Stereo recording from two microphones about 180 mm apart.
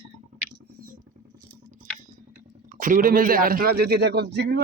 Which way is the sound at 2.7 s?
50° right (ahead or behind).